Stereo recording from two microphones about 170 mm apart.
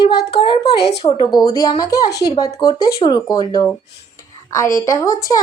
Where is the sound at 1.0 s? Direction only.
30° left (ahead or behind).